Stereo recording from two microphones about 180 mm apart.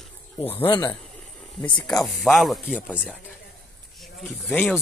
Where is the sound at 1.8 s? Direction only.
Centre (ahead or behind).